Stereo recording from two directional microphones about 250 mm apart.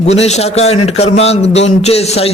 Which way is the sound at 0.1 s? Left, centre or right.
Left.